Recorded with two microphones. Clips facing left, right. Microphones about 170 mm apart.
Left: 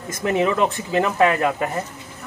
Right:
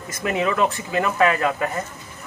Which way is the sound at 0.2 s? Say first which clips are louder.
Left 2 dB; 25° left (ahead or behind).